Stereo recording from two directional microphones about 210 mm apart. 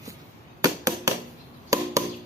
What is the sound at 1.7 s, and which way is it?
Chop, 15° right (ahead or behind).